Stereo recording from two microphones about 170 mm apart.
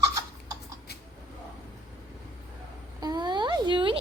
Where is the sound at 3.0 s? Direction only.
25° right (ahead or behind).